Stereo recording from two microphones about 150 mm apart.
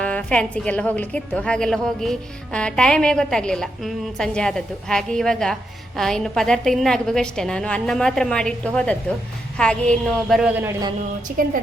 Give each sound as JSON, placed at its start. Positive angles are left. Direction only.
{"t": 0.0, "sound": "a woman's voice", "side_deg": 10}
{"t": 11.3, "sound": "a woman's voice", "side_deg": -70}